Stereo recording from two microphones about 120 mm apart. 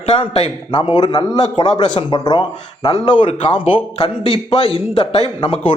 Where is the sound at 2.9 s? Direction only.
65° left (ahead or behind).